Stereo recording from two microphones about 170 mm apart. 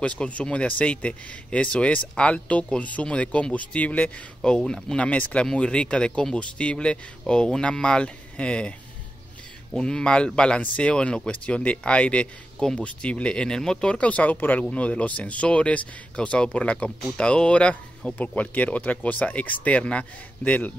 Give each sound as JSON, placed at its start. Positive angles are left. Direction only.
{"t": 0.2, "sound": "speech", "side_deg": 5}
{"t": 9.8, "sound": "speech", "side_deg": 5}